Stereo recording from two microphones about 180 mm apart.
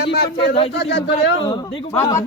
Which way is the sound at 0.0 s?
65° left (ahead or behind).